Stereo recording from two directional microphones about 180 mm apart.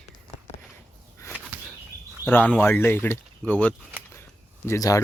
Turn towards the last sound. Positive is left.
turn(degrees=20)  # may be behind; listen again after turning